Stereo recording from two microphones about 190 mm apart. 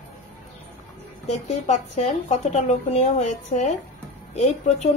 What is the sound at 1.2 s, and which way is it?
Speech, 40° left (ahead or behind).